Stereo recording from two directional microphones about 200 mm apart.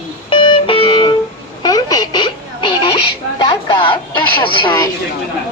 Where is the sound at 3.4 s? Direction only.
25° left (ahead or behind).